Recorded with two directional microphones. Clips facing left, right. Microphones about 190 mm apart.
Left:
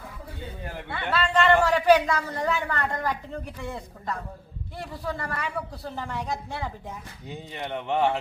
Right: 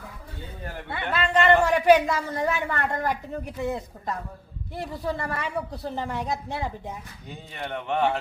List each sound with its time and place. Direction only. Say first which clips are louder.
0.9 s a woman's voice: even; 20° right (ahead or behind)
7.3 s a man's voice: left 1 dB; 20° left (ahead or behind)